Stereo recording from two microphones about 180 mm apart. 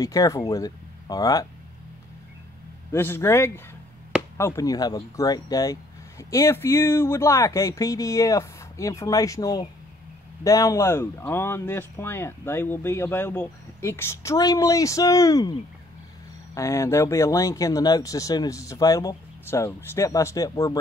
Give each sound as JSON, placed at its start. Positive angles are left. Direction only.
{"t": 0.0, "sound": "speech", "side_deg": 20}
{"t": 2.9, "sound": "speech", "side_deg": 15}
{"t": 16.5, "sound": "speech", "side_deg": 15}